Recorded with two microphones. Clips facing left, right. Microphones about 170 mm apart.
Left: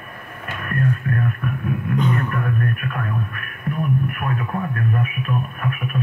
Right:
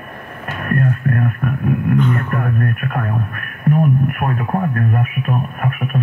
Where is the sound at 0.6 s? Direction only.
45° right (ahead or behind).